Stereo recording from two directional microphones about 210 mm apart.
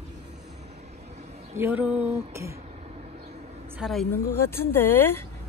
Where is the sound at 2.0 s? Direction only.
30° right (ahead or behind).